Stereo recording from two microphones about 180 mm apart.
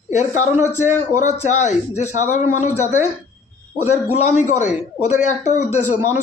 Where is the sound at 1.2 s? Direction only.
40° left (ahead or behind).